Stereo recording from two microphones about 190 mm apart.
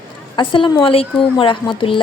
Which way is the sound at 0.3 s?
25° left (ahead or behind).